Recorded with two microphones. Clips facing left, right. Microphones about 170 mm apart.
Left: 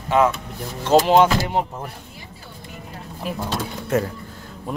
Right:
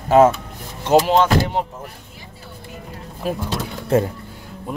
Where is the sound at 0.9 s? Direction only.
15° right (ahead or behind).